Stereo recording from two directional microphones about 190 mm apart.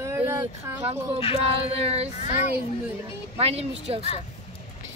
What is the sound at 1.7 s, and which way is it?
Speech, 35° right (ahead or behind).